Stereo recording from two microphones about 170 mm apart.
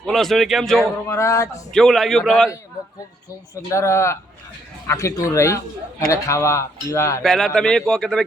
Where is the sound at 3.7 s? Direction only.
15° left (ahead or behind).